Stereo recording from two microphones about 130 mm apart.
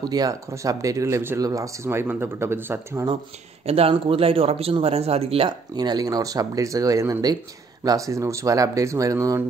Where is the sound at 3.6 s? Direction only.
50° right (ahead or behind).